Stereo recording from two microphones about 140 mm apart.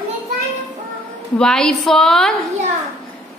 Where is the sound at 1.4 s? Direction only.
5° left (ahead or behind).